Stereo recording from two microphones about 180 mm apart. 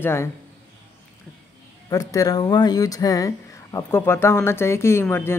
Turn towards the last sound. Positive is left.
turn(degrees=15)  # may be behind; listen again after turning